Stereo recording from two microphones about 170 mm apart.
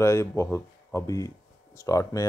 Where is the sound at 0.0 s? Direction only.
15° left (ahead or behind).